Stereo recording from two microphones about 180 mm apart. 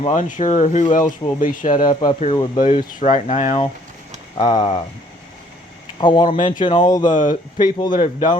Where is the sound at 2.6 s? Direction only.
40° left (ahead or behind).